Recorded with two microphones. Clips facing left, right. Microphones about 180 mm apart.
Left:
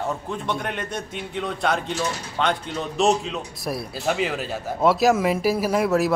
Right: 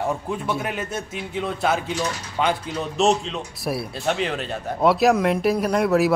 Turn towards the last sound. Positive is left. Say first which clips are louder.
# right 1 dB
turn(degrees=0)  # may be behind; listen again after turning